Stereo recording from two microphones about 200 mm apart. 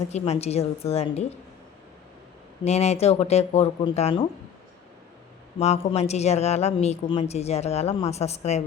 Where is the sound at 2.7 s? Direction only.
35° left (ahead or behind).